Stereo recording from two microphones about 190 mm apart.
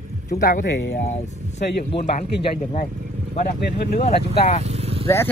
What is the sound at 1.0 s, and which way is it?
Speech, 35° left (ahead or behind).